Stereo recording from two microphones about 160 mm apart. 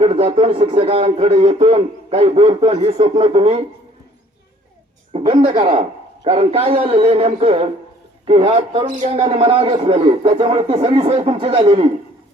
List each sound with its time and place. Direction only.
0.0 s a sound: 45° right (ahead or behind)
0.3 s a man's voice: 35° right (ahead or behind)
5.1 s a man's voice: 40° right (ahead or behind)